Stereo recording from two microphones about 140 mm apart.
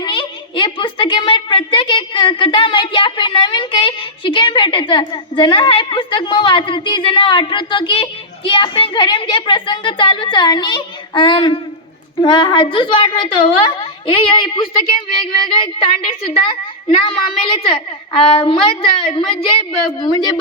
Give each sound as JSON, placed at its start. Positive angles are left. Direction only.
{"t": 0.0, "sound": "a woman's voice", "side_deg": 35}